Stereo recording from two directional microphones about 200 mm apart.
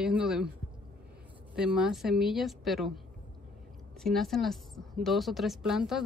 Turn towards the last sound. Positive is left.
turn(degrees=0)  # may be behind; listen again after turning